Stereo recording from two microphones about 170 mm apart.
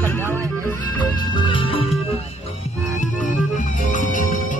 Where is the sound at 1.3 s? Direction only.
30° left (ahead or behind).